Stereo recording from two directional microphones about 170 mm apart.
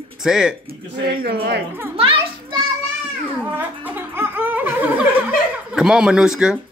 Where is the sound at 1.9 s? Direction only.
30° right (ahead or behind).